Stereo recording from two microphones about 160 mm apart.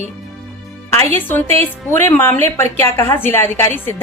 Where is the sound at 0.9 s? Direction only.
15° left (ahead or behind).